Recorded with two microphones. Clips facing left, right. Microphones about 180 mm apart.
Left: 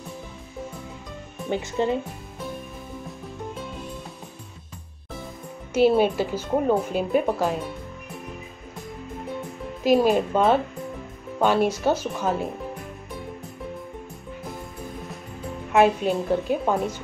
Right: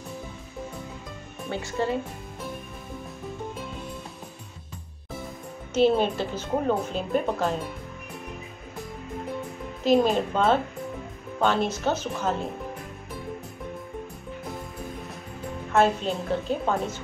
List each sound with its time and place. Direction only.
1.5 s speech: 20° left (ahead or behind)
5.7 s a woman's voice: 10° left (ahead or behind)
9.8 s a woman's voice: 5° left (ahead or behind)
15.7 s a woman's voice: 10° left (ahead or behind)